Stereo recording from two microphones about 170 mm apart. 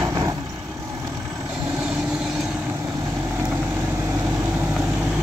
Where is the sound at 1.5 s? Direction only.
10° right (ahead or behind).